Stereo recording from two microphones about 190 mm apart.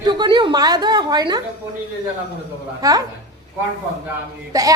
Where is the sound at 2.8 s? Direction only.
20° right (ahead or behind).